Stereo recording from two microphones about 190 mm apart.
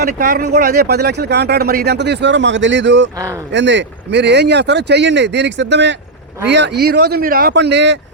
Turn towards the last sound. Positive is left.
turn(degrees=-65)  # may be behind; listen again after turning